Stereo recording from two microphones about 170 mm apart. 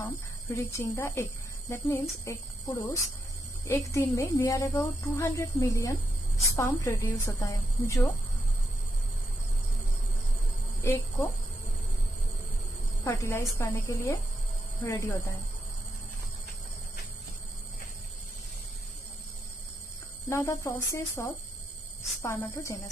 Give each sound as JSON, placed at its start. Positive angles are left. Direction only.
{"t": 0.0, "sound": "a woman's voice", "side_deg": 15}
{"t": 10.8, "sound": "a woman's voice", "side_deg": 15}
{"t": 13.0, "sound": "a woman's voice", "side_deg": 15}
{"t": 20.2, "sound": "a woman's voice", "side_deg": 15}